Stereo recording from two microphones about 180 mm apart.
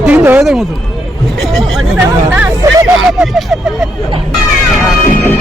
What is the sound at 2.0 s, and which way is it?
Speech, 10° right (ahead or behind).